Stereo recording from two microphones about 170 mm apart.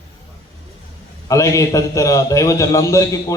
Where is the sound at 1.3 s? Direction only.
20° left (ahead or behind).